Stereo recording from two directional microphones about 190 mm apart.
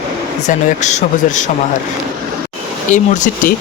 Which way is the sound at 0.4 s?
40° left (ahead or behind).